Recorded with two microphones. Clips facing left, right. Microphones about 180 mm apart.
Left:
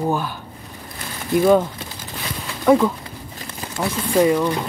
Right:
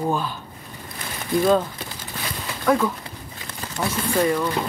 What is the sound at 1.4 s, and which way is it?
Speech, 10° left (ahead or behind).